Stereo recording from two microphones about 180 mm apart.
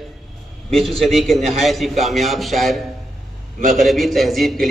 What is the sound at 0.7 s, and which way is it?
A man's voice, centre (ahead or behind).